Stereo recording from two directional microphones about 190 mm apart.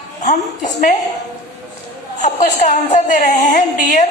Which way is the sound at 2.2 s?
40° left (ahead or behind).